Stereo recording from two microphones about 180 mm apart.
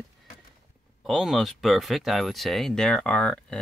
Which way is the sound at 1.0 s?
Centre (ahead or behind).